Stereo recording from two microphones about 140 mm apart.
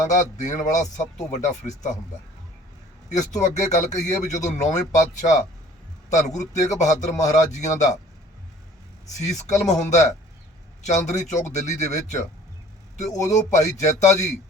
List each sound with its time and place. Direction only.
0.1 s a man's voice: 60° left (ahead or behind)
3.1 s a man's voice: 60° left (ahead or behind)
9.1 s a man's voice: 60° left (ahead or behind)